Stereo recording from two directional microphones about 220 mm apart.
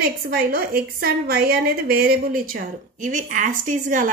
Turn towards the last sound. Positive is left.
turn(degrees=-35)  # may be behind; listen again after turning